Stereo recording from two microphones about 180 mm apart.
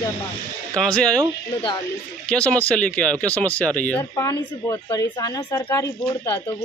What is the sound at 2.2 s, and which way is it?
Speech, 5° left (ahead or behind).